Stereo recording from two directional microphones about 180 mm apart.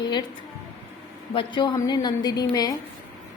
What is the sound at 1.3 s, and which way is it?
A woman's voice, 25° left (ahead or behind).